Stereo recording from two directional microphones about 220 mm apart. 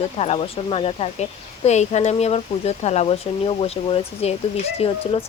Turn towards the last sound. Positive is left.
turn(degrees=25)  # may be behind; listen again after turning